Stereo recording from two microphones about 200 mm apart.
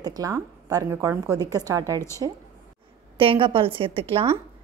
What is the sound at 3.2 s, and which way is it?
Speech, 25° right (ahead or behind).